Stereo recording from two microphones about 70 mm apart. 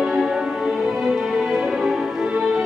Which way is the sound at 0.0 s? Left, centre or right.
Centre.